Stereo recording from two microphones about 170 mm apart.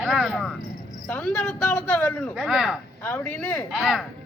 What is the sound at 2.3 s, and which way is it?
Speech, centre (ahead or behind).